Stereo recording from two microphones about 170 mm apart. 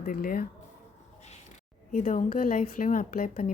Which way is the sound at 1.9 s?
45° left (ahead or behind).